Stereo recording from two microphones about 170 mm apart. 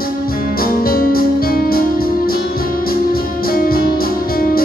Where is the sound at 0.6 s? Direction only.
60° left (ahead or behind).